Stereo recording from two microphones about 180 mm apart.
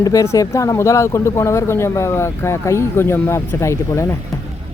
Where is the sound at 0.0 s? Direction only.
15° left (ahead or behind).